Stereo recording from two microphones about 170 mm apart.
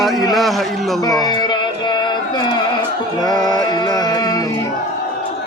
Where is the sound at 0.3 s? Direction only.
Centre (ahead or behind).